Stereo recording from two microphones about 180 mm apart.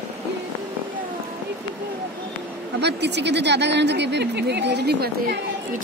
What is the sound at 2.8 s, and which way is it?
Speech, 70° right (ahead or behind).